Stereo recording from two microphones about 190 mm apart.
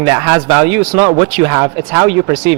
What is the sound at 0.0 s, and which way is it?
Speech, 15° right (ahead or behind).